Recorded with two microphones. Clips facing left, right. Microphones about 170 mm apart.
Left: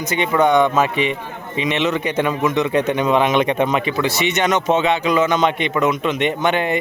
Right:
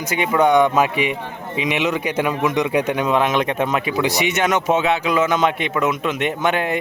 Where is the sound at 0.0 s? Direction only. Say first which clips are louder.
Left 1 dB; 10° right (ahead or behind).